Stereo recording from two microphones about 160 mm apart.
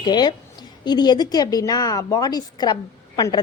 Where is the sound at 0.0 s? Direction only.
25° left (ahead or behind).